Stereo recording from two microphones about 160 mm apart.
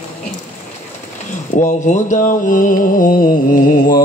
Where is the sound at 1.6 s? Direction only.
50° left (ahead or behind).